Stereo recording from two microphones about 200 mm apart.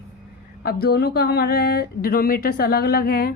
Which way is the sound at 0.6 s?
50° left (ahead or behind).